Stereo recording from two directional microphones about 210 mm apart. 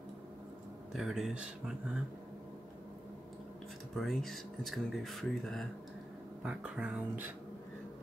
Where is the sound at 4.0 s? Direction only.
Centre (ahead or behind).